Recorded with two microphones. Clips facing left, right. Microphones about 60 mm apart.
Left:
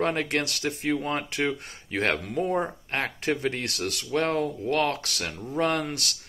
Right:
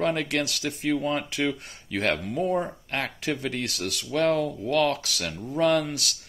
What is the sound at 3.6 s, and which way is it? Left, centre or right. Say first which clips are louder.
Speech: even; left.